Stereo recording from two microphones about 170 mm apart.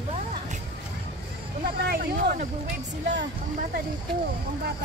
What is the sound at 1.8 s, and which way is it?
Speech, 65° right (ahead or behind).